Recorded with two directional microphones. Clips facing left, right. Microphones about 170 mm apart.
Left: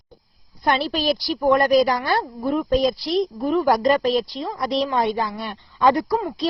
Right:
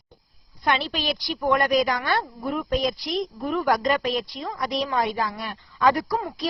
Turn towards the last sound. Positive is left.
turn(degrees=20)  # may be behind; listen again after turning